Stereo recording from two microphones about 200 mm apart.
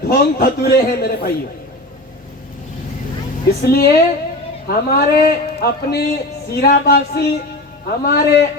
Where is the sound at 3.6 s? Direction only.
50° left (ahead or behind).